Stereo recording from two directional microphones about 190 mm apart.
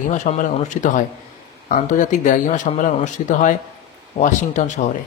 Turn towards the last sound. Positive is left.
turn(degrees=40)  # may be behind; listen again after turning